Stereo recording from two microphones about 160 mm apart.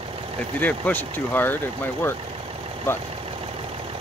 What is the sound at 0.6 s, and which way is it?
Speech, 10° left (ahead or behind).